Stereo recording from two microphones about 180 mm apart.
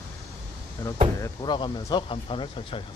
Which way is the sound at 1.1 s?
20° left (ahead or behind).